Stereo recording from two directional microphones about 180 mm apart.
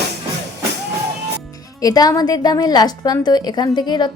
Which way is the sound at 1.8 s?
20° left (ahead or behind).